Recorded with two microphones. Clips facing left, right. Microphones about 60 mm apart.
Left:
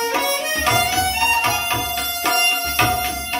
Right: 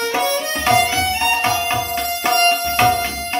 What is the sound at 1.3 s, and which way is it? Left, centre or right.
Music, right.